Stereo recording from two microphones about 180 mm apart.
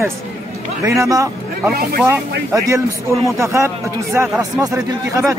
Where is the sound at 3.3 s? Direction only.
15° right (ahead or behind).